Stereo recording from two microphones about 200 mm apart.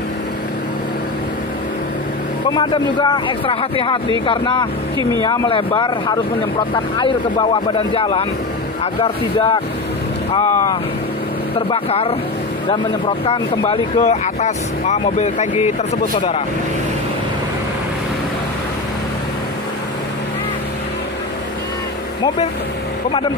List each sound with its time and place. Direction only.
2.5 s speech: 20° left (ahead or behind)